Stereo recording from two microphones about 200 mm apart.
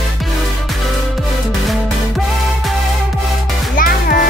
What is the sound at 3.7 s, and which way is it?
Music, 45° left (ahead or behind).